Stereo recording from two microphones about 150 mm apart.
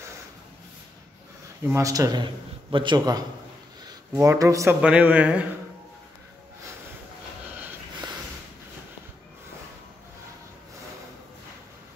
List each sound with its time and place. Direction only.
1.7 s a man's voice: 20° right (ahead or behind)
4.8 s speech: 10° right (ahead or behind)